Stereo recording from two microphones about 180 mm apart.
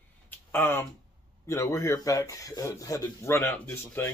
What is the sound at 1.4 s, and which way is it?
Speech, 15° left (ahead or behind).